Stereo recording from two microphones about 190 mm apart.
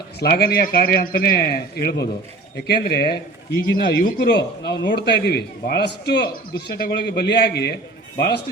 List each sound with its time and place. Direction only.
0.2 s a man's voice: 55° left (ahead or behind)